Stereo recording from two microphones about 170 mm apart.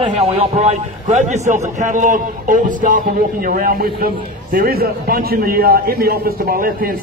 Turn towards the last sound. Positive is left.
turn(degrees=-55)  # may be behind; listen again after turning